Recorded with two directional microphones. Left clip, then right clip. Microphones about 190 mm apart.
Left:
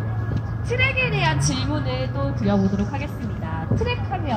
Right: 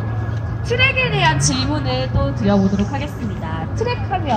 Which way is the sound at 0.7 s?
40° right (ahead or behind).